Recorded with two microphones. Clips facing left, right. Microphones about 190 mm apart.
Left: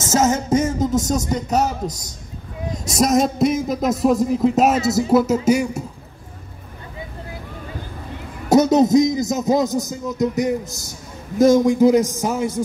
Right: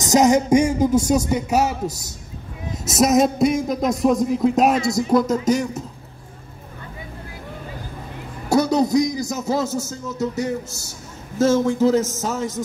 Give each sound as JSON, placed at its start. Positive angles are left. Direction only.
{"t": 0.0, "sound": "a man's voice", "side_deg": -15}
{"t": 8.5, "sound": "a man's voice", "side_deg": 20}